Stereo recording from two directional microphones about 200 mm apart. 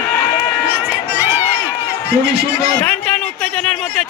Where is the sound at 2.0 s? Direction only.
55° right (ahead or behind).